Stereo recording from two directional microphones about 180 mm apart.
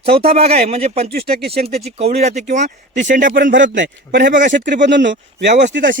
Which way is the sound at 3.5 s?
85° right.